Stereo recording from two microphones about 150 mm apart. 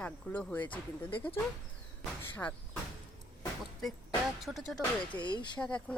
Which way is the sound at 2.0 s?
10° left (ahead or behind).